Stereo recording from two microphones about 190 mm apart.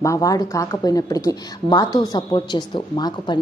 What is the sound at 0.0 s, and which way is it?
Speech, 15° left (ahead or behind).